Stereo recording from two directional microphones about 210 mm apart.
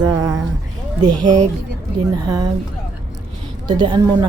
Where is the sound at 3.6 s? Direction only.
20° right (ahead or behind).